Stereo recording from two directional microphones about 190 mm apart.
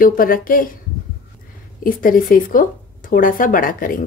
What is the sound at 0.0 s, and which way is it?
Speech, 45° left (ahead or behind).